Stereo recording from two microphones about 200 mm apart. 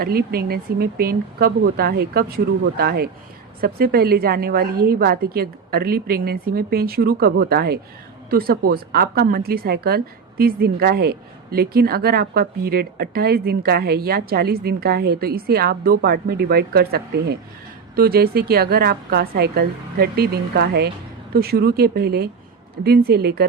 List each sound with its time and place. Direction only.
0.0 s a woman's voice: 50° right (ahead or behind)